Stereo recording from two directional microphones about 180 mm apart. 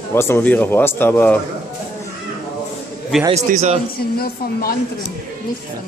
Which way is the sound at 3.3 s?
40° right (ahead or behind).